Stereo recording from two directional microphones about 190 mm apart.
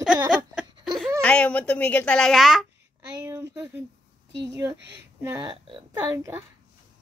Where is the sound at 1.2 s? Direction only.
5° left (ahead or behind).